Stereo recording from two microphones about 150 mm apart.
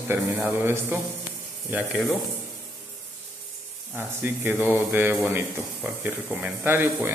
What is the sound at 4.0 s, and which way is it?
Speech, 15° right (ahead or behind).